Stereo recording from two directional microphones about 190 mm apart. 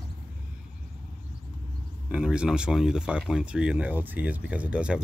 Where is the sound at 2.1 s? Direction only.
5° right (ahead or behind).